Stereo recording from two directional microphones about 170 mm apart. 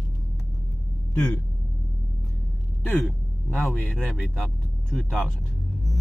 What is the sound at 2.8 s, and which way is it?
Speech, centre (ahead or behind).